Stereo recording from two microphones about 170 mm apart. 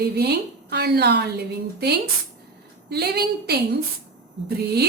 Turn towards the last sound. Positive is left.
turn(degrees=-70)  # may be behind; listen again after turning